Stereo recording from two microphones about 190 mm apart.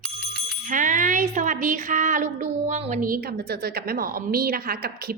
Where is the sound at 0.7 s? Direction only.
45° right (ahead or behind).